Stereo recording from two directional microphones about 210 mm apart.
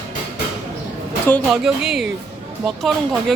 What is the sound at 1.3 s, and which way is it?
Speech, 10° left (ahead or behind).